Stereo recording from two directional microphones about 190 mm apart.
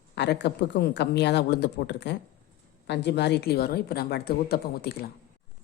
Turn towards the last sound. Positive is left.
turn(degrees=55)  # may be behind; listen again after turning